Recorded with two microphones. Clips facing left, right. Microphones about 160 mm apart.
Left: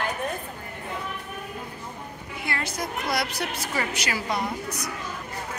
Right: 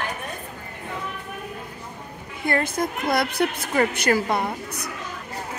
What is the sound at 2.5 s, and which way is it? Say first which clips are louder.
A woman's voice: right 8 dB; 50° right (ahead or behind).